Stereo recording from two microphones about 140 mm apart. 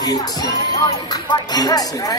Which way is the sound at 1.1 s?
30° left (ahead or behind).